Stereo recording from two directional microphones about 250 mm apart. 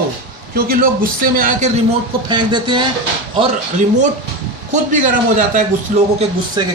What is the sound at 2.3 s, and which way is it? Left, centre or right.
Speech, centre.